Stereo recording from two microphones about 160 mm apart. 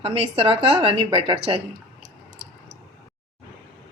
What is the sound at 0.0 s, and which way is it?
A woman's voice, 35° right (ahead or behind).